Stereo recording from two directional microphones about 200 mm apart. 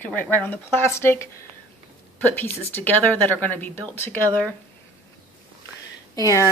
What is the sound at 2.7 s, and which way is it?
A woman's voice, 10° left (ahead or behind).